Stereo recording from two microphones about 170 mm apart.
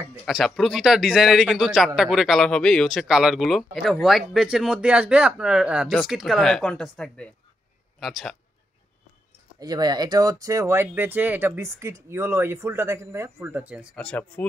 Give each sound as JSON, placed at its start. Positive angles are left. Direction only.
{"t": 0.2, "sound": "speech", "side_deg": 0}
{"t": 9.6, "sound": "speech", "side_deg": -25}
{"t": 13.9, "sound": "speech", "side_deg": 10}